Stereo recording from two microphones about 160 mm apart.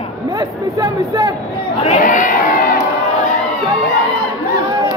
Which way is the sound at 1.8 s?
50° left (ahead or behind).